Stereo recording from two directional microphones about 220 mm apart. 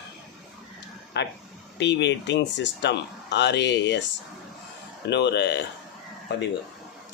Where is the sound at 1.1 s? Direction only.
50° left (ahead or behind).